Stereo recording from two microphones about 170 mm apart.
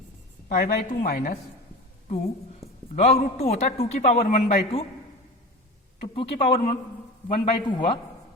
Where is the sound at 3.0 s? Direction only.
40° left (ahead or behind).